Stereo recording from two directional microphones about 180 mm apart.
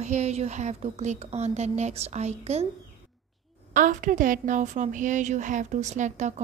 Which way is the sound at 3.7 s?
50° right (ahead or behind).